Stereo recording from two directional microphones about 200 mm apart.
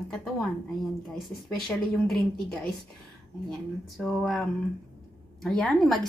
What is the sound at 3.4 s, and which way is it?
Speech, centre (ahead or behind).